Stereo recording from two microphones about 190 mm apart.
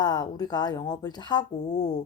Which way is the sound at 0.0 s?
20° left (ahead or behind).